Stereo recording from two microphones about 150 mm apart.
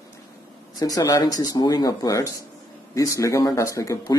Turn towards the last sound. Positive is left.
turn(degrees=20)  # may be behind; listen again after turning